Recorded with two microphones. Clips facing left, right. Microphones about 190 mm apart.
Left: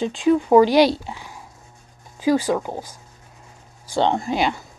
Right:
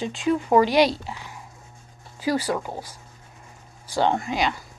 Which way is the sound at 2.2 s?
15° left (ahead or behind).